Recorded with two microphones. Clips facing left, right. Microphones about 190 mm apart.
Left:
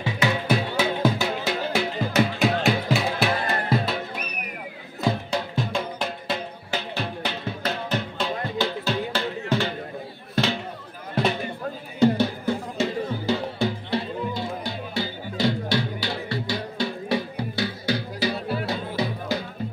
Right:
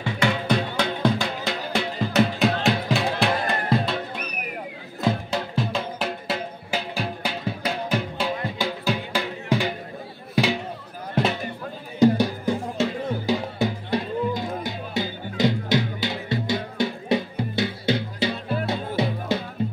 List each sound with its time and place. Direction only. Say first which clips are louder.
0.0 s music: right 1 dB; 5° left (ahead or behind)
5.0 s music: right 1 dB; 5° right (ahead or behind)
10.3 s a sound: right 2 dB; 10° right (ahead or behind)
12.0 s music: right 2 dB; 15° right (ahead or behind)